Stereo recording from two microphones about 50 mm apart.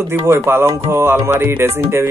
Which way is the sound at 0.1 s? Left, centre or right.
Right.